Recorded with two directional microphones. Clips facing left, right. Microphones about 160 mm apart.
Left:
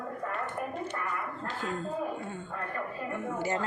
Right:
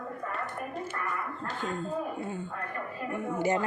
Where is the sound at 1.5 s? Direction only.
Centre (ahead or behind).